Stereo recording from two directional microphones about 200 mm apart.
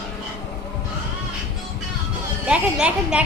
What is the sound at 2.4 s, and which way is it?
Speech, 5° right (ahead or behind).